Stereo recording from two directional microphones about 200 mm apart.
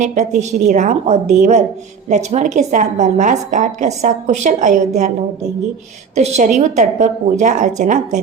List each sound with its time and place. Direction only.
0.0 s a woman's voice: 35° right (ahead or behind)
6.1 s a woman's voice: 35° right (ahead or behind)